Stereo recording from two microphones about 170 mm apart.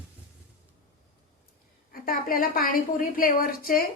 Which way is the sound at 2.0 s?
60° left (ahead or behind).